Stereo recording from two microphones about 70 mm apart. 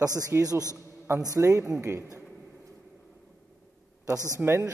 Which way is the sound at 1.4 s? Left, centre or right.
Right.